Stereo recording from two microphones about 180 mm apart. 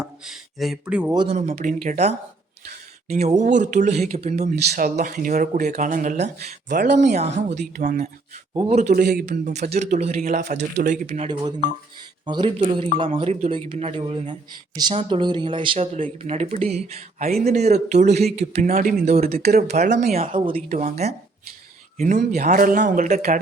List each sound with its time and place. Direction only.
0.0 s speech: centre (ahead or behind)
1.1 s speech: 25° right (ahead or behind)
1.4 s speech: 40° right (ahead or behind)
3.2 s speech: 40° right (ahead or behind)
4.5 s speech: 60° right (ahead or behind)
4.9 s speech: 50° right (ahead or behind); by 8.9 s 30° right (ahead or behind)
8.9 s speech: 50° right (ahead or behind); by 11.3 s 35° right (ahead or behind)
12.2 s speech: 25° right (ahead or behind)
19.3 s speech: 60° right (ahead or behind)
19.6 s speech: 40° right (ahead or behind)